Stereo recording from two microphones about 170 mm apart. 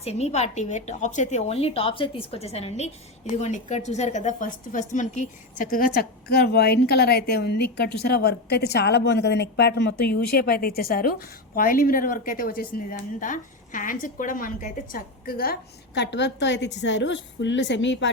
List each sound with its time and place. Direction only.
0.0 s a woman's voice: 40° left (ahead or behind); by 15.5 s 60° left (ahead or behind)
16.0 s a woman's voice: 90° left